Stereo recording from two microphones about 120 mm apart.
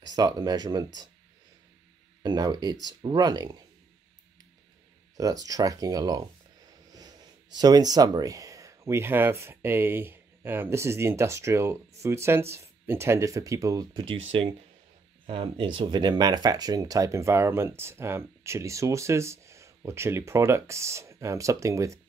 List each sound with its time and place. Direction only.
0.0 s speech: 35° right (ahead or behind)
2.2 s speech: 35° right (ahead or behind)
5.1 s speech: 30° right (ahead or behind)
13.9 s speech: 45° right (ahead or behind); by 22.0 s 25° right (ahead or behind)